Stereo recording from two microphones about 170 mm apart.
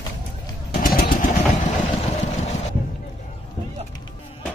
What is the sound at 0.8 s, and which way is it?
Vehicle, 55° left (ahead or behind).